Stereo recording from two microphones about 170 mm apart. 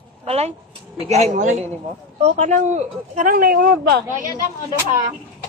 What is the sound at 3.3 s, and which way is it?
Speech, 55° right (ahead or behind).